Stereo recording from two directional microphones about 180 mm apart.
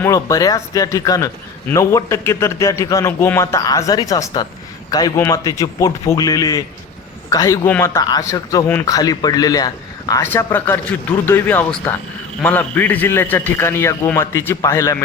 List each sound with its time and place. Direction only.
0.0 s a man's voice: 20° left (ahead or behind)